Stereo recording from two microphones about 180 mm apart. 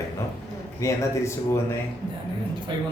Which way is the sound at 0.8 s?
15° left (ahead or behind).